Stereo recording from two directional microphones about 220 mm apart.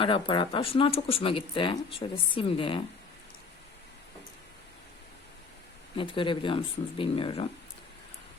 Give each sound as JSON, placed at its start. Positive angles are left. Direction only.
{"t": 0.0, "sound": "speech", "side_deg": 25}
{"t": 6.0, "sound": "speech", "side_deg": 25}